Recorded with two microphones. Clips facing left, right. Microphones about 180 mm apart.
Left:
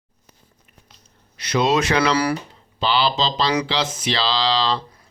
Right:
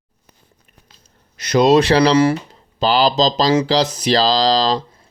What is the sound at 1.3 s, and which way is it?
Mantra, 40° right (ahead or behind).